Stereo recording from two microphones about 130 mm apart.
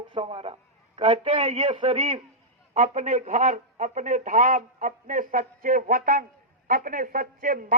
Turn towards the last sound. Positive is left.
turn(degrees=-90)